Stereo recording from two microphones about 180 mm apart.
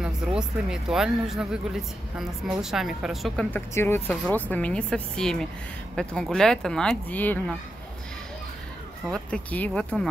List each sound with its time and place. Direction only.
0.4 s speech: 5° right (ahead or behind)
3.5 s speech: 15° left (ahead or behind)
9.1 s speech: 5° left (ahead or behind)